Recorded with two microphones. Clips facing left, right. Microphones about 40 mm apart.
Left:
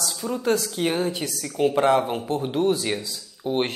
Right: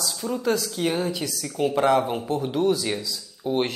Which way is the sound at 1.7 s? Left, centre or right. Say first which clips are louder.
Right 1 dB; left.